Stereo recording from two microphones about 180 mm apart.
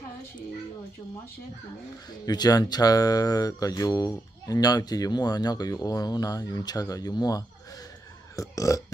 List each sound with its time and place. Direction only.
2.2 s speech: 20° left (ahead or behind)